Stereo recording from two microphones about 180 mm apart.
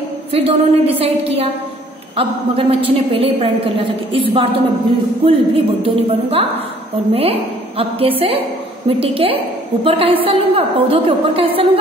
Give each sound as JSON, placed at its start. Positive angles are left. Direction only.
{"t": 0.3, "sound": "a woman's voice", "side_deg": -30}